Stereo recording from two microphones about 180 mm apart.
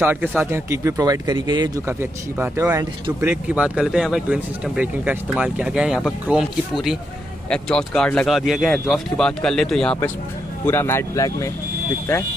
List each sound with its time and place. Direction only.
0.0 s speech: 10° right (ahead or behind)
1.9 s speech: 10° right (ahead or behind); by 11.5 s 20° left (ahead or behind)